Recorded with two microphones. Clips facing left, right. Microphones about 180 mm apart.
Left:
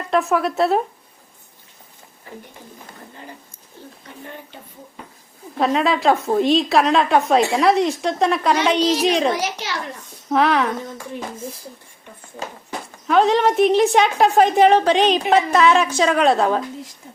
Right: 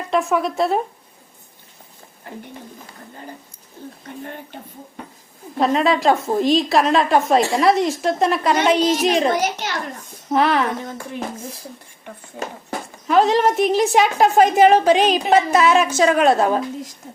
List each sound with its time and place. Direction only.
0.1 s a woman's voice: centre (ahead or behind)
5.5 s a woman's voice: centre (ahead or behind)
9.3 s a child's voice: 50° right (ahead or behind)
10.3 s a woman's voice: centre (ahead or behind)
13.1 s a woman's voice: centre (ahead or behind)